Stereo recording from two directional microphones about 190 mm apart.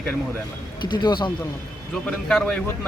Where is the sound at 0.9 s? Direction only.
25° left (ahead or behind).